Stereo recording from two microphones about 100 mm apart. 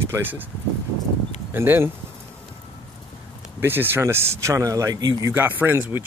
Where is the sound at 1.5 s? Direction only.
25° right (ahead or behind).